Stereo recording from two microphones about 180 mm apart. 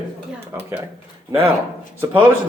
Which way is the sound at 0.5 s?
10° right (ahead or behind).